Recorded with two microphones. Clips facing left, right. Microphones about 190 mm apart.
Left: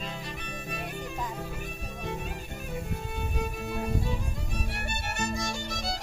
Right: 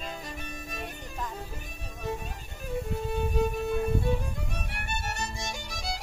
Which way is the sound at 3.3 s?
45° right (ahead or behind).